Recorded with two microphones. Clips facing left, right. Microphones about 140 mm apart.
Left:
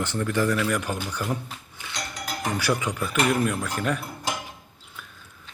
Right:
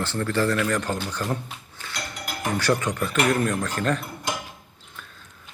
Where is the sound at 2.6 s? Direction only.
10° left (ahead or behind).